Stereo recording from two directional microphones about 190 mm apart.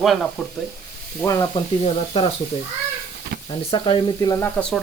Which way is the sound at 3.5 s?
25° left (ahead or behind).